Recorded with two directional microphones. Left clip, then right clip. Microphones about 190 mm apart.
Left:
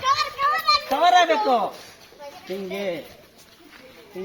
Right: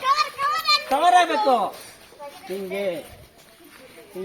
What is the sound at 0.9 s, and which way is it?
Speech, 20° left (ahead or behind).